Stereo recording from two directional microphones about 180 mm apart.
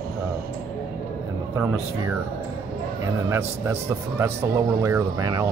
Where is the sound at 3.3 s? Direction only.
15° right (ahead or behind).